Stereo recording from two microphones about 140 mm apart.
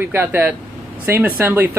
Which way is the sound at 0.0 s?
15° right (ahead or behind).